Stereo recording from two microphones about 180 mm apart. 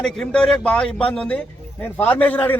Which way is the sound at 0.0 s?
5° left (ahead or behind).